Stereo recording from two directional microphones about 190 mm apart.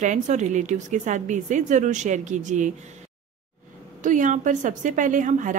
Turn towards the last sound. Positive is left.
turn(degrees=-40)  # may be behind; listen again after turning